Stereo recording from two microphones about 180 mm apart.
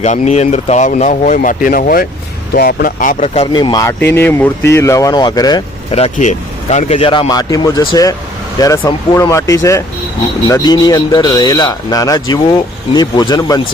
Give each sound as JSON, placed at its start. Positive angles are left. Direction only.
{"t": 0.0, "sound": "speech", "side_deg": 40}
{"t": 3.4, "sound": "speech", "side_deg": 25}
{"t": 5.9, "sound": "speech", "side_deg": 40}